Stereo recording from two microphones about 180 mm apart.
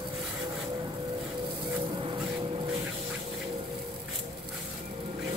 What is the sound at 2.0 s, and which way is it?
Vehicle, 30° right (ahead or behind).